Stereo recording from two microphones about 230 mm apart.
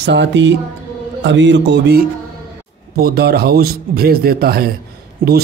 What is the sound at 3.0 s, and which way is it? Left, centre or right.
A man's voice, right.